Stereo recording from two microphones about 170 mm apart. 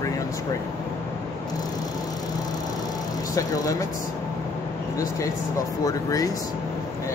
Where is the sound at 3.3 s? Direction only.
20° left (ahead or behind).